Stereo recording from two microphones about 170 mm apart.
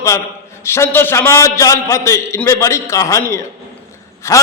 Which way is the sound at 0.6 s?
15° left (ahead or behind).